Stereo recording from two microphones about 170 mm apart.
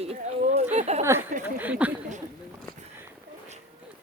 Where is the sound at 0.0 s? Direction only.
40° right (ahead or behind).